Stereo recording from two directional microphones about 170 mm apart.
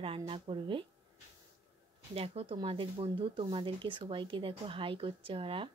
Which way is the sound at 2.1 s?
35° right (ahead or behind).